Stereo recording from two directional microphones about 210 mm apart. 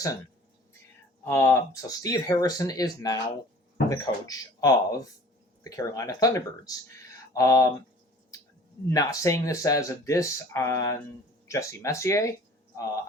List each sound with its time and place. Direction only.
1.2 s speech: 10° left (ahead or behind)
8.9 s speech: 15° left (ahead or behind)